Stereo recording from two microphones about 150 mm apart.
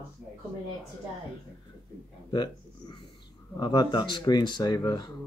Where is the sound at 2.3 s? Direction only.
30° left (ahead or behind).